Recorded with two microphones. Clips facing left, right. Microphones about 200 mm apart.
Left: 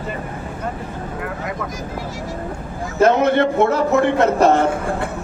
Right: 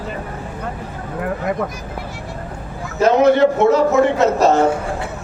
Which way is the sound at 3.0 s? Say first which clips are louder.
Right 2 dB; 55° left (ahead or behind).